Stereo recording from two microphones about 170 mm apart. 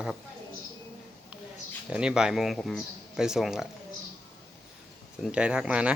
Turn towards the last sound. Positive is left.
turn(degrees=-5)  # may be behind; listen again after turning